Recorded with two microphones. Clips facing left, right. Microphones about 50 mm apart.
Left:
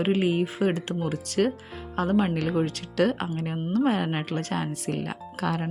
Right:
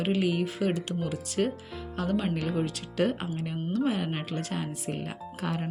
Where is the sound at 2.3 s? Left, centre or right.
Left.